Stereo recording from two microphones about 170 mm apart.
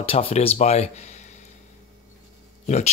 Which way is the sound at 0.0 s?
35° left (ahead or behind).